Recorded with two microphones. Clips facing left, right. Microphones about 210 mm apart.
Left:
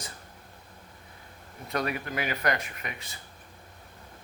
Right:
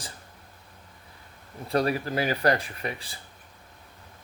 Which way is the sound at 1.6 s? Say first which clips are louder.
Right 6 dB; 30° right (ahead or behind).